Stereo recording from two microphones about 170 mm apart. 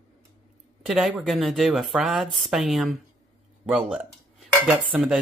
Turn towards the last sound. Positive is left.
turn(degrees=-10)  # may be behind; listen again after turning